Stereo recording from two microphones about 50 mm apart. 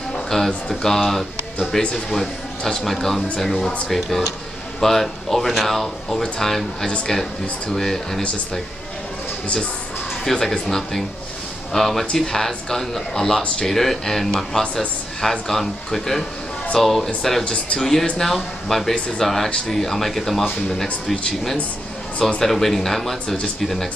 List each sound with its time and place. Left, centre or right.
0.3 s speech: centre
10.2 s speech: centre